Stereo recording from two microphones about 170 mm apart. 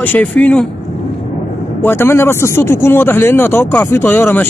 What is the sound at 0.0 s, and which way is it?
Speech, 10° left (ahead or behind).